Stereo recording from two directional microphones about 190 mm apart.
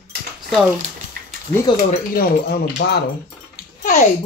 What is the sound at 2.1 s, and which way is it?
Speech, 55° left (ahead or behind).